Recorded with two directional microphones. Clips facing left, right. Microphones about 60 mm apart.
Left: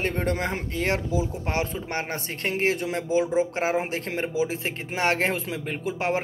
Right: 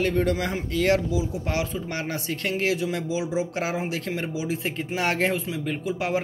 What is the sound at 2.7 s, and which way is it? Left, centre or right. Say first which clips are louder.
Speech: left 2 dB; left.